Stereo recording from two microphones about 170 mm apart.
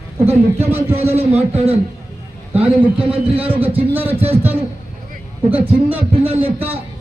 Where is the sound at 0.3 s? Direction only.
15° right (ahead or behind).